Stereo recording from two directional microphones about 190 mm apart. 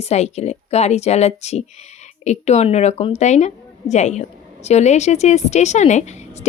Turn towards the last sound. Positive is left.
turn(degrees=35)  # may be behind; listen again after turning